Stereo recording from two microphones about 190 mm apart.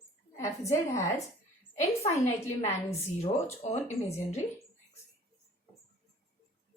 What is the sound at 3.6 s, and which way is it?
Speech, 35° left (ahead or behind).